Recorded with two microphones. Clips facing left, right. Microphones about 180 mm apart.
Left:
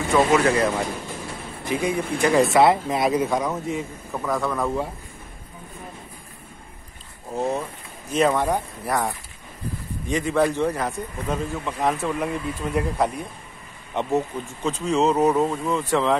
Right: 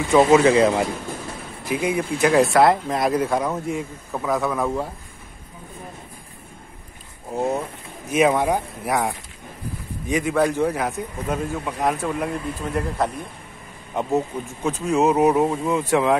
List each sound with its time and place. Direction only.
0.1 s speech: 15° right (ahead or behind)
1.7 s a man's voice: 5° right (ahead or behind)
7.3 s a man's voice: 10° right (ahead or behind)